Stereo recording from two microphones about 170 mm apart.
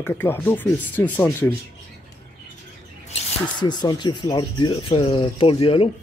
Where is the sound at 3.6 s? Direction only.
25° left (ahead or behind).